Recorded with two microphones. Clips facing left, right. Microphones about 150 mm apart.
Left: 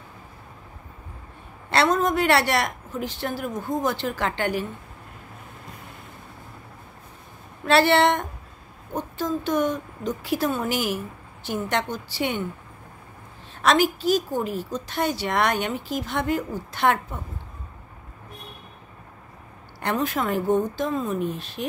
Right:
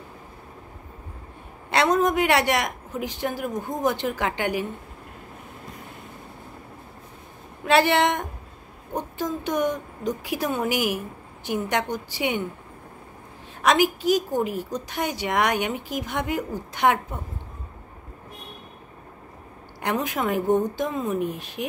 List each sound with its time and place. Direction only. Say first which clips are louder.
1.7 s a woman's voice: even; 15° right (ahead or behind)
7.6 s a woman's voice: left 1 dB; 15° right (ahead or behind)
13.6 s a woman's voice: even; 15° right (ahead or behind)
19.8 s a woman's voice: left 1 dB; 15° right (ahead or behind)